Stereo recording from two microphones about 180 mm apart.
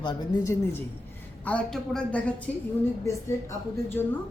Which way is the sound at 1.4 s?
5° left (ahead or behind).